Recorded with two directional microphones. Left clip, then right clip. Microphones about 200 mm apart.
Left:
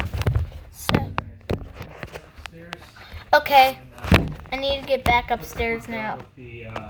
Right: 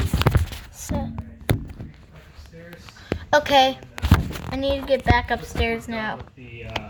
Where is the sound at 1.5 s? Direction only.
30° right (ahead or behind).